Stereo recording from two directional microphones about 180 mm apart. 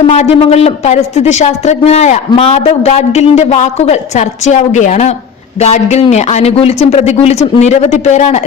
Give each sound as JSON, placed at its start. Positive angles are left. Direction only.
{"t": 0.1, "sound": "a woman's voice", "side_deg": 35}